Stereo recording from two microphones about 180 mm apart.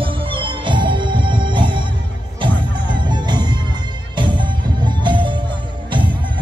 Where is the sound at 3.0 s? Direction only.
25° right (ahead or behind).